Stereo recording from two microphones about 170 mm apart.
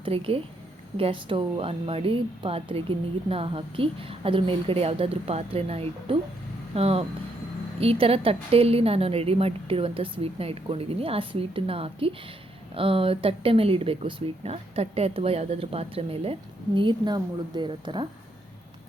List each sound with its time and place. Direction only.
0.0 s speech: 30° right (ahead or behind)